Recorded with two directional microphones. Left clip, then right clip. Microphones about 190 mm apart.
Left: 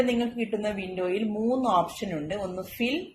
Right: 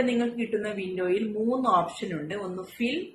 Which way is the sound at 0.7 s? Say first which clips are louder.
Right 2 dB; 40° left (ahead or behind).